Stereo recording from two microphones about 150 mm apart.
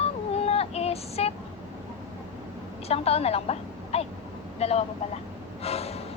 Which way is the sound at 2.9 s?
40° left (ahead or behind).